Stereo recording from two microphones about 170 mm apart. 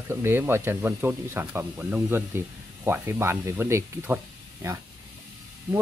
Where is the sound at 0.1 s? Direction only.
15° right (ahead or behind).